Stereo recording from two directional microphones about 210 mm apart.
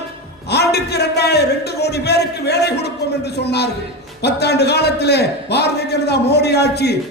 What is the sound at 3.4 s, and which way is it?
A man's voice, 50° left (ahead or behind).